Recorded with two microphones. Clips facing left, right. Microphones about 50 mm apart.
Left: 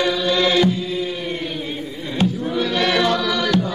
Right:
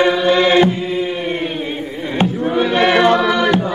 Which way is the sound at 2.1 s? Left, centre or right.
Right.